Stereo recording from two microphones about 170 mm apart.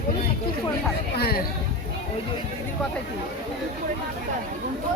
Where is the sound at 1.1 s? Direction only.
65° left (ahead or behind).